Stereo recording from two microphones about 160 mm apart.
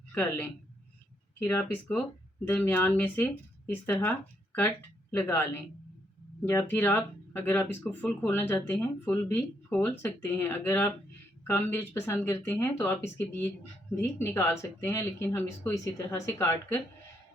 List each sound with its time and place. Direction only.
0.1 s a woman's voice: 10° left (ahead or behind)
5.1 s speech: 15° left (ahead or behind)